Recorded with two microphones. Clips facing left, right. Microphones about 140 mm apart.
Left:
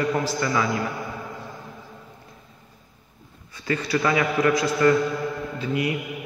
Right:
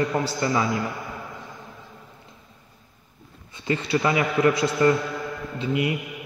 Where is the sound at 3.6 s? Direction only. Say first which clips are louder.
Even; 25° right (ahead or behind).